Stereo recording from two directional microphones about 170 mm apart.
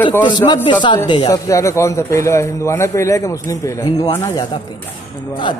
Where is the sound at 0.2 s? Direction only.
25° left (ahead or behind).